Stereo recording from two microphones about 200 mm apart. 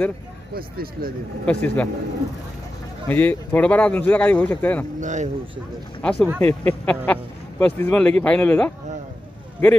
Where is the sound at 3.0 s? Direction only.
10° left (ahead or behind).